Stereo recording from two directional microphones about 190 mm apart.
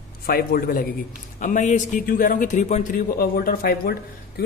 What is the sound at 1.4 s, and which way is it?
A man's voice, 40° left (ahead or behind).